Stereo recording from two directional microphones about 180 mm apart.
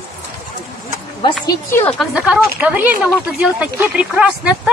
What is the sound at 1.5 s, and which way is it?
Speech, 15° left (ahead or behind).